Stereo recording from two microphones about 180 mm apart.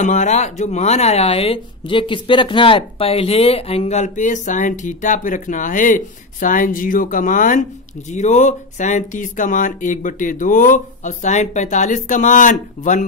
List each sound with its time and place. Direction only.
0.0 s speech: 40° left (ahead or behind)